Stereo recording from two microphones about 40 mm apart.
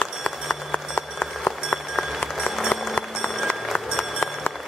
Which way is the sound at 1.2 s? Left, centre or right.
Centre.